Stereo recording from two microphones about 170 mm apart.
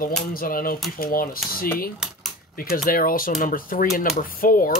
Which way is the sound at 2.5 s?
60° left (ahead or behind).